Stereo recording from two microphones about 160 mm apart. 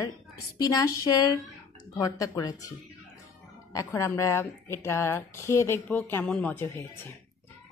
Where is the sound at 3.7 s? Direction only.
20° left (ahead or behind).